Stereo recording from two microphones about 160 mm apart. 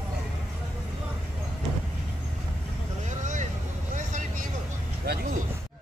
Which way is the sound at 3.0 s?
50° right (ahead or behind).